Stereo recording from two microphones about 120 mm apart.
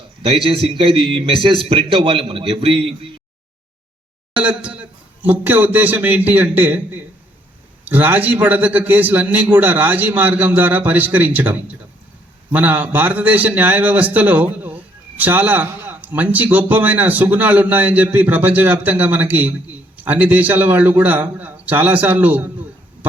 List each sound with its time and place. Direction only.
0.2 s a man's voice: 45° right (ahead or behind)
4.4 s a man's voice: 10° right (ahead or behind)
12.5 s a man's voice: 15° right (ahead or behind)